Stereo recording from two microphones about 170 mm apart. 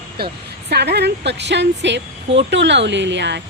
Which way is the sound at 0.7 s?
75° right (ahead or behind).